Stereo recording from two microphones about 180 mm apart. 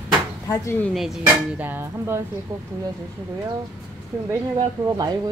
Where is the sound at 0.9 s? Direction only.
Centre (ahead or behind).